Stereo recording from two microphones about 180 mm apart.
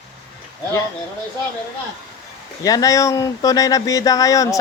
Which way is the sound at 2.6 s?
20° left (ahead or behind).